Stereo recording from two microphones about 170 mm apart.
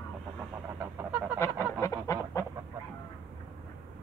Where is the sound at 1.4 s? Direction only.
15° left (ahead or behind).